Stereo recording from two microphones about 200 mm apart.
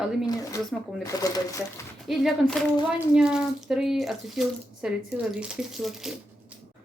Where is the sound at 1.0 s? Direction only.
15° left (ahead or behind).